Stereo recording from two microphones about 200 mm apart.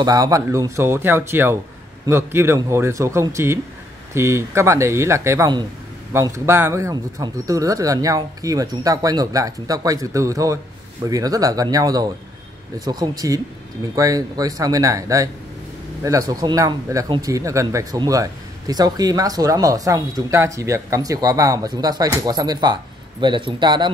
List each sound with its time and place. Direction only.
0.0 s speech: 20° right (ahead or behind)